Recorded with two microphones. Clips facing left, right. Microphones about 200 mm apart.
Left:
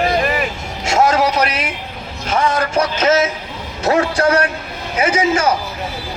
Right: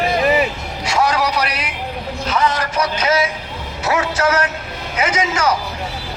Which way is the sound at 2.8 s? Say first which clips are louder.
Left 2 dB; 50° left (ahead or behind).